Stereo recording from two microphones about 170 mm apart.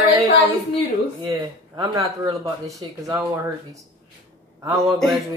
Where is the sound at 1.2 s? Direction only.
20° right (ahead or behind).